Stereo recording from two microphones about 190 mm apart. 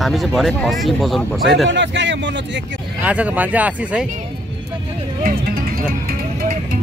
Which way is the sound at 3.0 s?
5° right (ahead or behind).